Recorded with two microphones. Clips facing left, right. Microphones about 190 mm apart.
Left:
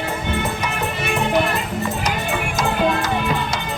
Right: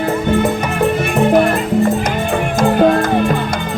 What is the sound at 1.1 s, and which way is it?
Music, 50° right (ahead or behind).